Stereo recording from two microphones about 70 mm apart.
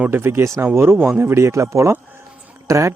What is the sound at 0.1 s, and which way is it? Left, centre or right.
Speech, right.